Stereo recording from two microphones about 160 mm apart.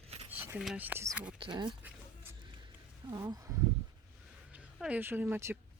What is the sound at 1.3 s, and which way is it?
Speech, 30° right (ahead or behind).